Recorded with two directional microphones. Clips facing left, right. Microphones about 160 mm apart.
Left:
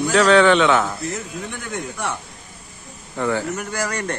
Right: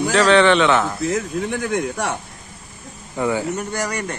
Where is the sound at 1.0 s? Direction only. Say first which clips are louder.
Right 7 dB; 90° right.